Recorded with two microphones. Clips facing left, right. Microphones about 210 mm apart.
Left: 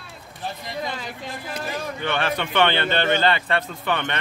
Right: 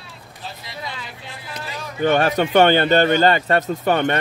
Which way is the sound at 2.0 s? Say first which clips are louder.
Right 9 dB; 45° right (ahead or behind).